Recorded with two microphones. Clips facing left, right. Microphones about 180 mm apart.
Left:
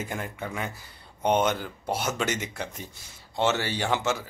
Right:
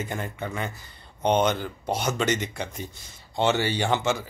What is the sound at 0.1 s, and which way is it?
Speech, 5° left (ahead or behind).